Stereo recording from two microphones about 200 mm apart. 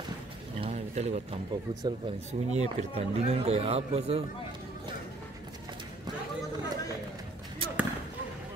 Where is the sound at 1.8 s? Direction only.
30° right (ahead or behind).